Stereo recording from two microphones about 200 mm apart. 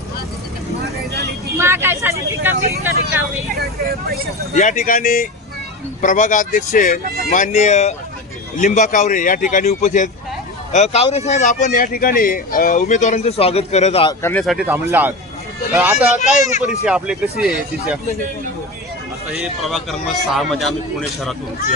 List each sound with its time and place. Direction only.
1.5 s speech: 15° right (ahead or behind)
3.5 s speech: 50° right (ahead or behind)
4.5 s speech: 35° left (ahead or behind)
14.1 s speech: 10° left (ahead or behind)
14.4 s a man's voice: 5° right (ahead or behind)
16.8 s a man's voice: 5° right (ahead or behind)
19.3 s a man's voice: centre (ahead or behind)